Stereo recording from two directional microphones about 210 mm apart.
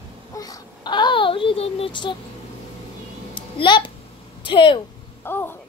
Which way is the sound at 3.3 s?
20° left (ahead or behind).